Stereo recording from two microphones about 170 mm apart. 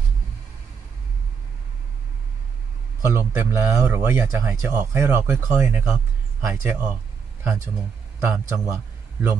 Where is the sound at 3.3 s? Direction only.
10° right (ahead or behind).